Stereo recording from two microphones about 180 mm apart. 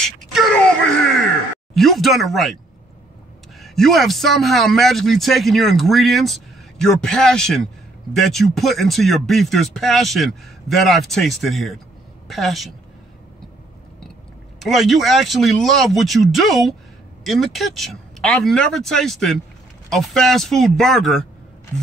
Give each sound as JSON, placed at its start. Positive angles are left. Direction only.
{"t": 0.0, "sound": "child singing", "side_deg": 0}
{"t": 1.8, "sound": "speech", "side_deg": 0}
{"t": 3.6, "sound": "speech", "side_deg": 0}
{"t": 14.6, "sound": "speech", "side_deg": 0}